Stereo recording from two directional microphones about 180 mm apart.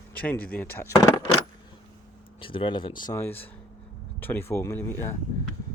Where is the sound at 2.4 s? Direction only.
30° left (ahead or behind).